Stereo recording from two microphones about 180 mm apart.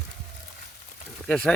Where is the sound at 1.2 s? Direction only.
5° left (ahead or behind).